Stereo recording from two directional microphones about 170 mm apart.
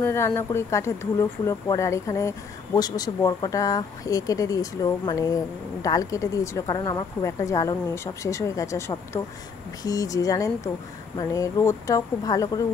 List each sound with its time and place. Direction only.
0.0 s speech: 15° left (ahead or behind)